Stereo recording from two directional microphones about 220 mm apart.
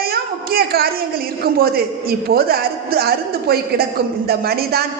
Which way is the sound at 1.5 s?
45° right (ahead or behind).